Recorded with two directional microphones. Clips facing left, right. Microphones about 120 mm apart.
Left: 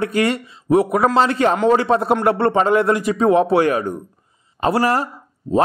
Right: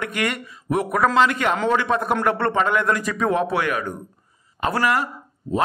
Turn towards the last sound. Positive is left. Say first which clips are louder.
# left 5 dB
turn(degrees=35)  # may be behind; listen again after turning